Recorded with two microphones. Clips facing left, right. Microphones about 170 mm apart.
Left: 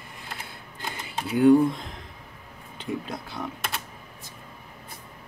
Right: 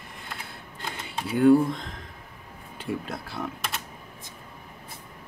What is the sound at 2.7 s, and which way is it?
Speech, 5° right (ahead or behind).